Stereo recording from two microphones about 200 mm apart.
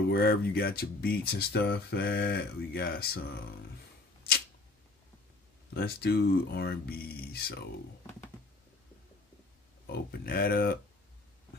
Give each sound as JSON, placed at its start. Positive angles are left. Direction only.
{"t": 0.1, "sound": "speech", "side_deg": 50}
{"t": 5.8, "sound": "speech", "side_deg": 55}
{"t": 9.8, "sound": "speech", "side_deg": 50}